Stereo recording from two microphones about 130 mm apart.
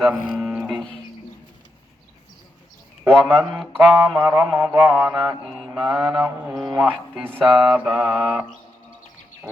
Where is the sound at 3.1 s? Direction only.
5° left (ahead or behind).